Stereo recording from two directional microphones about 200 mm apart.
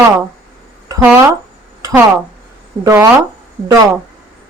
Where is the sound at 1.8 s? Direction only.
15° right (ahead or behind).